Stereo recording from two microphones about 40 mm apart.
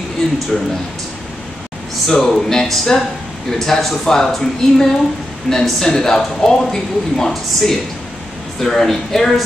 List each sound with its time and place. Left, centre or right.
0.5 s speech: centre
2.0 s speech: centre